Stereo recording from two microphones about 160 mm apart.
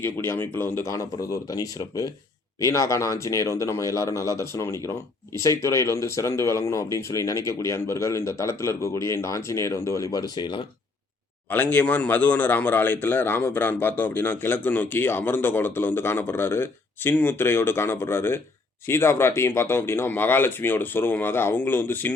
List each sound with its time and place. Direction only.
0.0 s speech: 15° left (ahead or behind)
11.5 s speech: 10° left (ahead or behind)